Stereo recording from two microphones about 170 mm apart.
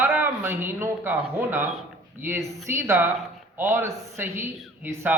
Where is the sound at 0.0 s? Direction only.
10° right (ahead or behind).